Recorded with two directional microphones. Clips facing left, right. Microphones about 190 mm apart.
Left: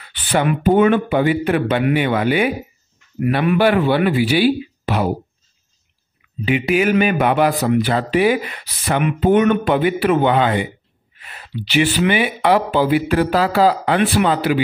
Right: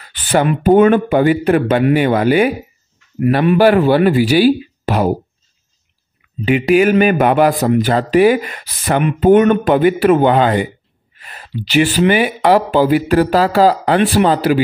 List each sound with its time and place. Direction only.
0.0 s speech: 40° right (ahead or behind)
6.4 s speech: 45° right (ahead or behind)